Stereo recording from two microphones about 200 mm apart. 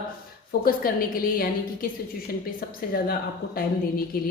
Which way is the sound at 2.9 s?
50° left (ahead or behind).